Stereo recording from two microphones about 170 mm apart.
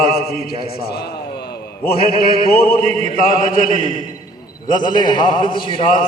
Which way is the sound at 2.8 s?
45° right (ahead or behind).